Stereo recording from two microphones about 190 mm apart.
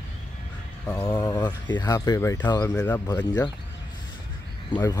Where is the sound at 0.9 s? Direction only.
20° left (ahead or behind).